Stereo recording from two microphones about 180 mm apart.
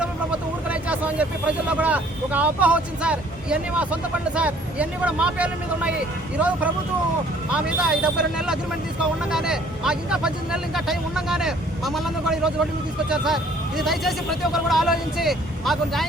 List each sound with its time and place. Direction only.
0.0 s speech: 5° right (ahead or behind)
7.5 s speech: 5° right (ahead or behind)